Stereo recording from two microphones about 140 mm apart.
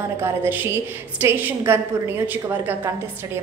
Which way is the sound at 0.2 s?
15° right (ahead or behind).